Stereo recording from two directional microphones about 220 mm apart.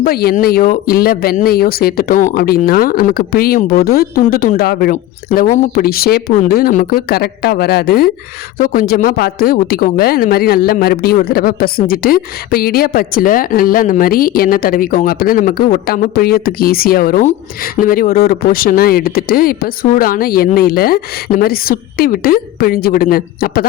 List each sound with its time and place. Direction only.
0.0 s a woman's voice: 45° left (ahead or behind)